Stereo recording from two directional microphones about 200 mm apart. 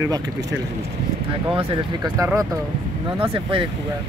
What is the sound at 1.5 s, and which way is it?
Speech, 20° right (ahead or behind).